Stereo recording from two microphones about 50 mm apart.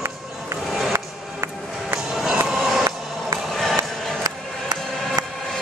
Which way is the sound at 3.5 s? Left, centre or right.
Centre.